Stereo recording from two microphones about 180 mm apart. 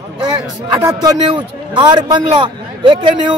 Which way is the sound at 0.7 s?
20° right (ahead or behind).